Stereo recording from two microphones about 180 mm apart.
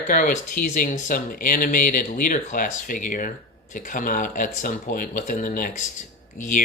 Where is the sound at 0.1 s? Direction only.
50° left (ahead or behind).